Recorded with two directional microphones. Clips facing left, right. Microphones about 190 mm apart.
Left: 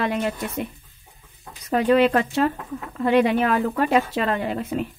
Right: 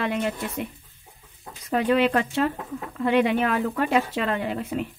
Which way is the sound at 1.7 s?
40° left (ahead or behind).